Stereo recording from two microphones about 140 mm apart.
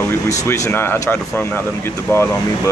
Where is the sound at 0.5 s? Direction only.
15° left (ahead or behind).